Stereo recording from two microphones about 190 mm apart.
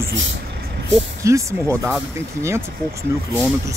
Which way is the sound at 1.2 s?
15° right (ahead or behind).